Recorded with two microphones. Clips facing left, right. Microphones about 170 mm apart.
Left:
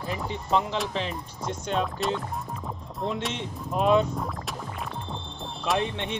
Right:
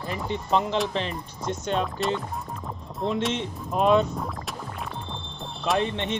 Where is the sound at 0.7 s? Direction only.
5° left (ahead or behind).